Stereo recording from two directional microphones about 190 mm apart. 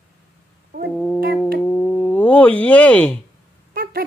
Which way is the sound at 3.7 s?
50° right (ahead or behind).